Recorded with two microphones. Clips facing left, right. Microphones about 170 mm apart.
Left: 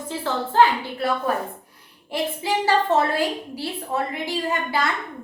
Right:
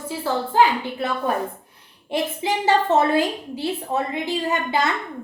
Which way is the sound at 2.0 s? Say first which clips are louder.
Right 2 dB; 20° right (ahead or behind).